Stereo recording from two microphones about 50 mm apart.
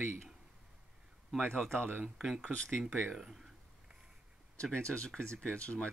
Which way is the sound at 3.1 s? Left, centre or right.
Centre.